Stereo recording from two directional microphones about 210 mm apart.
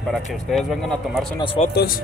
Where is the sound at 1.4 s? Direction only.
25° left (ahead or behind).